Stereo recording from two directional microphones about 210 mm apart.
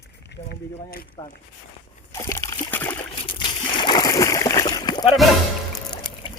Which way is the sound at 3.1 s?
25° left (ahead or behind).